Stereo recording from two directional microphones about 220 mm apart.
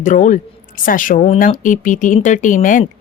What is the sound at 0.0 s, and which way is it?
A woman's voice, 35° left (ahead or behind).